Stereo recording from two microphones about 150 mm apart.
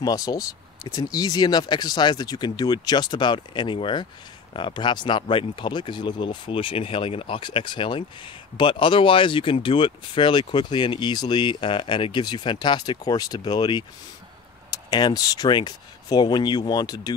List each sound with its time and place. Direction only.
0.0 s speech: 25° left (ahead or behind)